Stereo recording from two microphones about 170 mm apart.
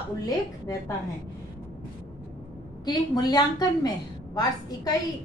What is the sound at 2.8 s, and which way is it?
A woman's voice, 25° left (ahead or behind).